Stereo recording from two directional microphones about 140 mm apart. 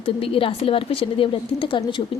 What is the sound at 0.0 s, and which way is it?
Speech, 40° left (ahead or behind).